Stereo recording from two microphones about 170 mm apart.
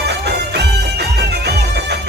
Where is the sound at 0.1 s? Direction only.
75° right (ahead or behind).